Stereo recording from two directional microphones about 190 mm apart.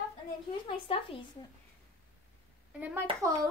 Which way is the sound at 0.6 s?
30° left (ahead or behind).